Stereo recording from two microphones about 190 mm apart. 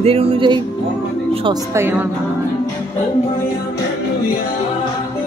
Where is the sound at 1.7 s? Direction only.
10° right (ahead or behind).